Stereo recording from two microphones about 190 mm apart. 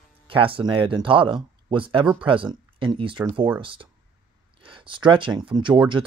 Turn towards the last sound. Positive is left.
turn(degrees=-25)  # may be behind; listen again after turning